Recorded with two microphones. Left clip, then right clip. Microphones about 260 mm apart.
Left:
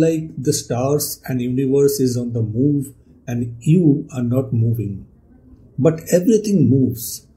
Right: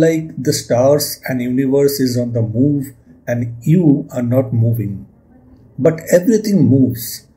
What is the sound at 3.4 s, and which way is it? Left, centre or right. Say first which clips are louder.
Speech: right 1 dB; centre.